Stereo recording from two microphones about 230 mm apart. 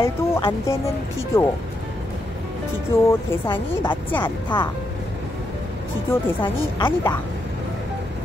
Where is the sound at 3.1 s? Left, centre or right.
Centre.